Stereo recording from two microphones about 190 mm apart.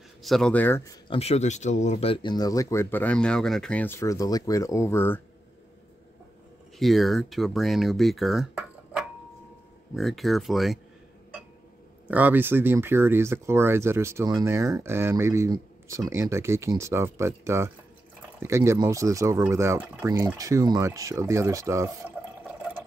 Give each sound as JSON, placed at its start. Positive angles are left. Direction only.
{"t": 0.2, "sound": "speech", "side_deg": 0}
{"t": 1.1, "sound": "speech", "side_deg": 35}
{"t": 6.8, "sound": "speech", "side_deg": 0}
{"t": 12.1, "sound": "speech", "side_deg": -10}